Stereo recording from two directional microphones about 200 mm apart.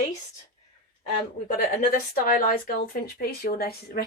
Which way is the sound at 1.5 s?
50° left (ahead or behind).